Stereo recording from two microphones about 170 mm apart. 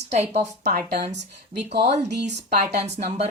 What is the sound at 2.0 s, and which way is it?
A woman's voice, 45° right (ahead or behind).